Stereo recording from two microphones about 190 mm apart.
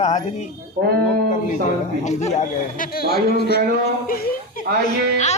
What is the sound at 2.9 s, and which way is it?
Speech, 55° left (ahead or behind).